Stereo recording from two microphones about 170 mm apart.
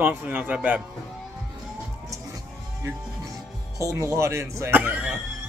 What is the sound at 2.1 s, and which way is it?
Music, 20° right (ahead or behind).